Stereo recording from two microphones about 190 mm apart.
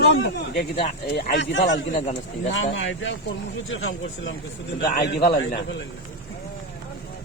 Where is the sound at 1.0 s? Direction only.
65° left (ahead or behind).